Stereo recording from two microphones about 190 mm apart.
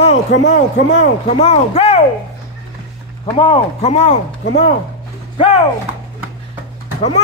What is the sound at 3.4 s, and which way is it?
Speech, 30° left (ahead or behind).